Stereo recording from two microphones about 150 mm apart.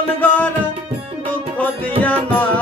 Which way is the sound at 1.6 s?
10° left (ahead or behind).